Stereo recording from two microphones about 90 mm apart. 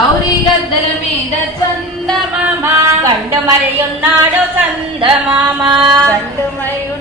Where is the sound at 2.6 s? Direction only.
25° right (ahead or behind).